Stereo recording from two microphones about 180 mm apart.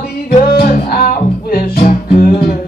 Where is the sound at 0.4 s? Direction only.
55° left (ahead or behind).